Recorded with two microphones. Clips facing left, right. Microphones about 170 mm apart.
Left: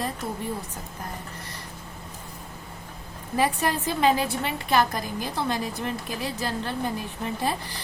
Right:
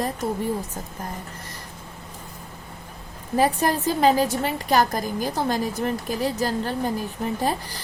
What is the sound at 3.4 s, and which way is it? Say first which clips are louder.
A woman's voice: right 4 dB; 40° right (ahead or behind).